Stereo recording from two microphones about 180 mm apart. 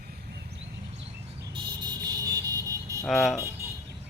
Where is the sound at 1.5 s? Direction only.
25° right (ahead or behind).